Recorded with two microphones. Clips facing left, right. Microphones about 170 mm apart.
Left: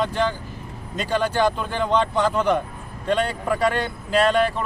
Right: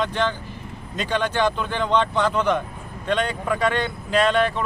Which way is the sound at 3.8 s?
40° left (ahead or behind).